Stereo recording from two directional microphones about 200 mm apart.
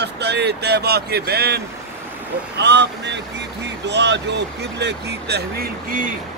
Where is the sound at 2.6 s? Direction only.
60° right (ahead or behind).